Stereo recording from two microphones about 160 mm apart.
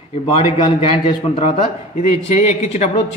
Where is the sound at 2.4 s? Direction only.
45° left (ahead or behind).